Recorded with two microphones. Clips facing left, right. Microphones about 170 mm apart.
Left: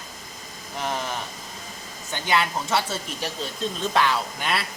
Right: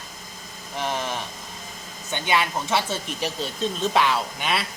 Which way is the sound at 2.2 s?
20° right (ahead or behind).